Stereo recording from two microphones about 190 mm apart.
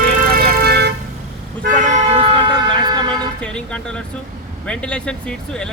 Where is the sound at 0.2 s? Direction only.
55° right (ahead or behind).